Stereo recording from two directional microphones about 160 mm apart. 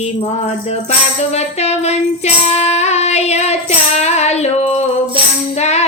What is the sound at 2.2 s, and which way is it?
Music, 40° left (ahead or behind).